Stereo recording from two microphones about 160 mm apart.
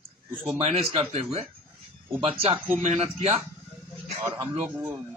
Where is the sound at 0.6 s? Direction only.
40° right (ahead or behind).